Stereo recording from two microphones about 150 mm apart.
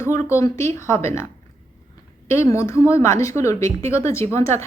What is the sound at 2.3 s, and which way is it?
Speech, 20° left (ahead or behind).